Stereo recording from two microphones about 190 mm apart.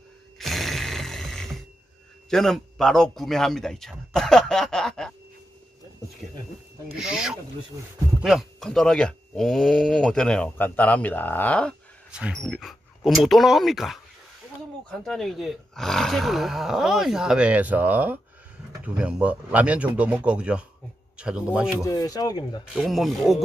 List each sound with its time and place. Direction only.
0.4 s a sound: centre (ahead or behind)
2.2 s speech: centre (ahead or behind)
7.0 s speech: 5° right (ahead or behind)
21.8 s speech: 20° left (ahead or behind)
22.8 s speech: centre (ahead or behind)